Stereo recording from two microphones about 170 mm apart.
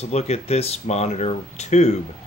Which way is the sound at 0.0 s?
40° left (ahead or behind).